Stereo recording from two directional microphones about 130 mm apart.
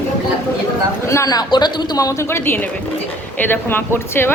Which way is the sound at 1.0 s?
25° left (ahead or behind).